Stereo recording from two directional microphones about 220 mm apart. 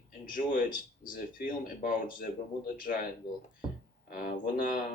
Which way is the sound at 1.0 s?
40° left (ahead or behind).